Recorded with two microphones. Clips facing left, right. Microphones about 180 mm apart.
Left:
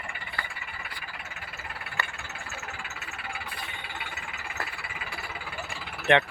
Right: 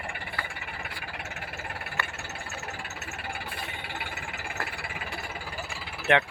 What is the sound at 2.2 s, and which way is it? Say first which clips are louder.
Vehicle: right 2 dB; 40° right (ahead or behind).